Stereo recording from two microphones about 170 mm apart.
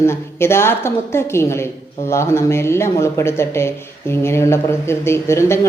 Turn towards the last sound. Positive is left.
turn(degrees=15)  # may be behind; listen again after turning